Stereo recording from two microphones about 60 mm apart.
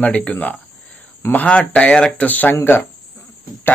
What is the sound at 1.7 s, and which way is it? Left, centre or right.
Speech, centre.